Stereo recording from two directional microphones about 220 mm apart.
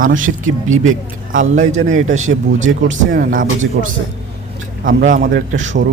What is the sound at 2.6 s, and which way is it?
Speech, 60° right (ahead or behind).